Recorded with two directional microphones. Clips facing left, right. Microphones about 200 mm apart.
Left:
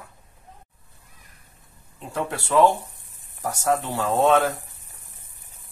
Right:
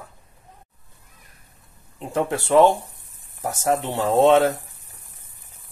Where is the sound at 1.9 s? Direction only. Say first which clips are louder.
Right 5 dB; 20° right (ahead or behind).